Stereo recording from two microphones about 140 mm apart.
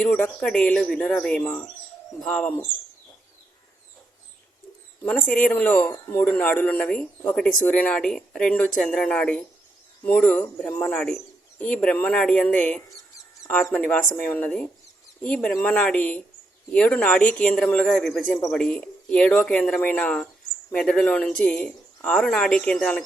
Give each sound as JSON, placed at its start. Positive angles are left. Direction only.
{"t": 0.0, "sound": "speech", "side_deg": 10}
{"t": 5.0, "sound": "speech", "side_deg": 5}